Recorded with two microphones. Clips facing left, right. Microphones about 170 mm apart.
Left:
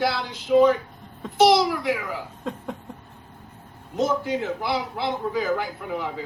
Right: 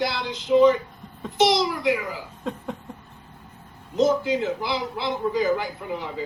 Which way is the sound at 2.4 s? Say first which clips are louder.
Right 2 dB; centre (ahead or behind).